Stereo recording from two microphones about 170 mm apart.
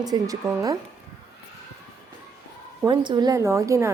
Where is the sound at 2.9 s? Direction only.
25° right (ahead or behind).